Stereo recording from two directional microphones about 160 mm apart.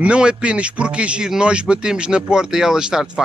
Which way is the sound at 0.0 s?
5° right (ahead or behind).